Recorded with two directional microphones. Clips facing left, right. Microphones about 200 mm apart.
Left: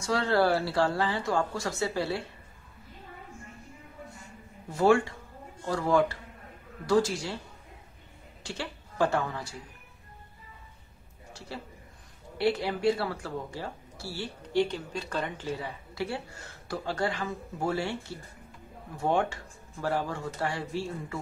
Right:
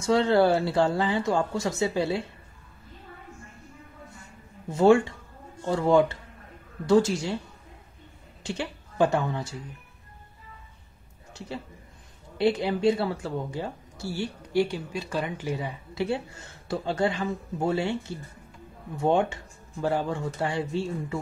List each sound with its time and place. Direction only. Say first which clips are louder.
0.0 s speech: right 5 dB; 20° right (ahead or behind)
4.7 s speech: right 4 dB; 25° right (ahead or behind)
8.5 s a woman's voice: right 5 dB; 20° right (ahead or behind)
11.3 s a man's voice: right 4 dB; 20° right (ahead or behind)
18.9 s speech: right 4 dB; 25° right (ahead or behind)